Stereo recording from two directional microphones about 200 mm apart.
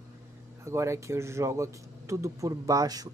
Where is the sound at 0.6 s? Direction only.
15° right (ahead or behind).